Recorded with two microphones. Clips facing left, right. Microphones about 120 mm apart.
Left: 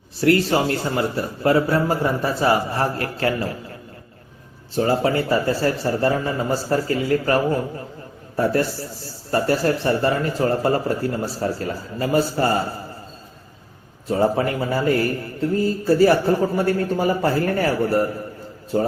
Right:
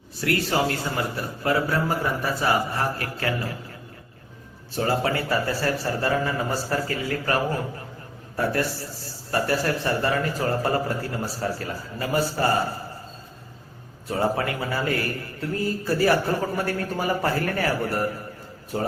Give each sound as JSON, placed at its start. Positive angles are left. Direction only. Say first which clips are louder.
{"t": 0.2, "sound": "a man's voice", "louder": "left 6 dB", "side_deg": 30}
{"t": 4.8, "sound": "a man's voice", "louder": "left 5 dB", "side_deg": 25}
{"t": 14.1, "sound": "a man's voice", "louder": "left 5 dB", "side_deg": 25}